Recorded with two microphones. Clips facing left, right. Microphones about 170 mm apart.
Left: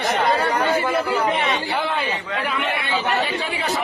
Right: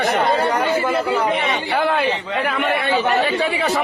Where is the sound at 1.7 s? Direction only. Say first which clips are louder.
Right 5 dB; 55° right (ahead or behind).